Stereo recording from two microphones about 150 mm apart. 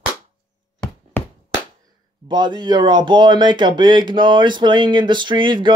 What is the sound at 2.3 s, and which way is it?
Speech, 30° right (ahead or behind).